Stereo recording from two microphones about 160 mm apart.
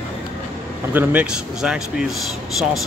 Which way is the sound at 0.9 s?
5° right (ahead or behind).